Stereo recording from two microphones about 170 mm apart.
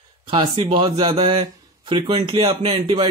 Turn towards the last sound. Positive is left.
turn(degrees=-30)  # may be behind; listen again after turning